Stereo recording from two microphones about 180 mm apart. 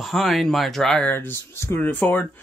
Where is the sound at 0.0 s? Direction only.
Centre (ahead or behind).